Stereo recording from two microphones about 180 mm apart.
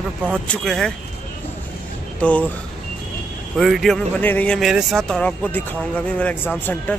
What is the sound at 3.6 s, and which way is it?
Speech, centre (ahead or behind).